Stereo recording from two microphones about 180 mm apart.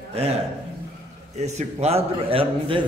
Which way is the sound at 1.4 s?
35° right (ahead or behind).